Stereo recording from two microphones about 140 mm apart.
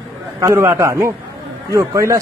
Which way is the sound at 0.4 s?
20° right (ahead or behind).